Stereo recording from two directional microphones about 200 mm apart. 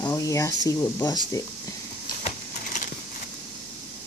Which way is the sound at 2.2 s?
40° left (ahead or behind).